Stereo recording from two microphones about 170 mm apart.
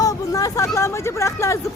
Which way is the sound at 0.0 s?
20° left (ahead or behind).